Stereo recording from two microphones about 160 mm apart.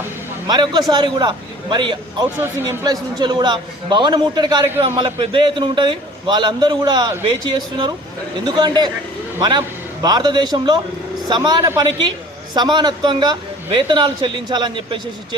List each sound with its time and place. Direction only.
0.4 s a man's voice: 25° right (ahead or behind)
2.2 s a man's voice: 15° right (ahead or behind); by 15.4 s 30° right (ahead or behind)